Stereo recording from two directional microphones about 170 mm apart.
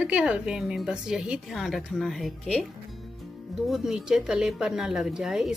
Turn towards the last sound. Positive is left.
turn(degrees=0)  # may be behind; listen again after turning